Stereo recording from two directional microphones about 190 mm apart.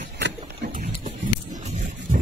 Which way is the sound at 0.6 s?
45° right (ahead or behind).